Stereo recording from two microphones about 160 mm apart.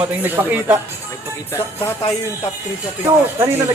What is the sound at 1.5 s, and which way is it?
Music, 15° left (ahead or behind).